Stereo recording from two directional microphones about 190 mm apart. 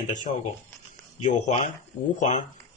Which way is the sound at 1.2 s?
40° left (ahead or behind).